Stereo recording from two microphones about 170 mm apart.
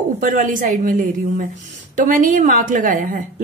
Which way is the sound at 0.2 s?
50° right (ahead or behind).